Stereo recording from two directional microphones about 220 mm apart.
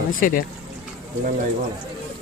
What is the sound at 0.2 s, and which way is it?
Speech, 40° left (ahead or behind).